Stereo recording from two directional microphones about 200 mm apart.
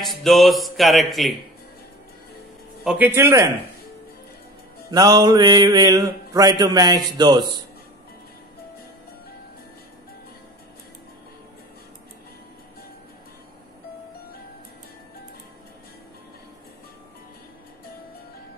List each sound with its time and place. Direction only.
0.0 s speech: centre (ahead or behind)
2.8 s a man's voice: 5° right (ahead or behind)
4.9 s mantra: 20° right (ahead or behind)